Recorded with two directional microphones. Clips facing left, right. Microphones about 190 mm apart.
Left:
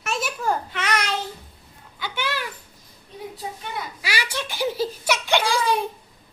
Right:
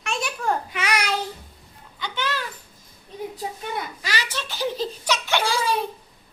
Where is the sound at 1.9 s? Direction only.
5° left (ahead or behind).